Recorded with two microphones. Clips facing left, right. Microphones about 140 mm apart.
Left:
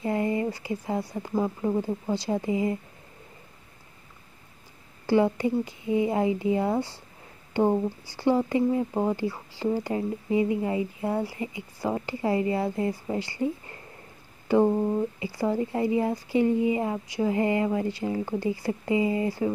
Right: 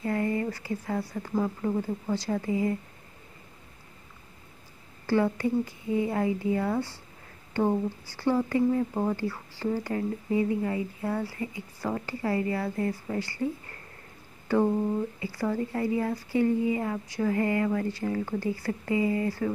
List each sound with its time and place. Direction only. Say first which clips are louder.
0.0 s speech: left 2 dB; 20° left (ahead or behind)
5.0 s speech: left 3 dB; 15° left (ahead or behind)